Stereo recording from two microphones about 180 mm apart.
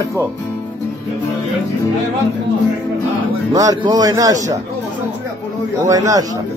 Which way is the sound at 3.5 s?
20° right (ahead or behind).